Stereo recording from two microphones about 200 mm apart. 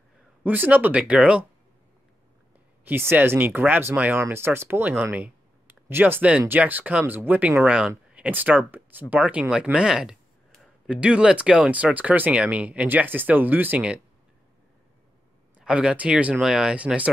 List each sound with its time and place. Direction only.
0.4 s speech: 10° right (ahead or behind)
2.8 s speech: 10° right (ahead or behind)
15.6 s speech: 5° right (ahead or behind)